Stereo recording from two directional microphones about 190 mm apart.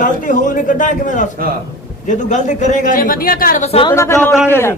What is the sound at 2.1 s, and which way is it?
A man's voice, 40° left (ahead or behind).